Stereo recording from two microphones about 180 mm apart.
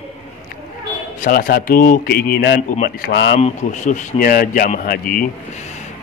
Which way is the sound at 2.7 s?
50° left (ahead or behind).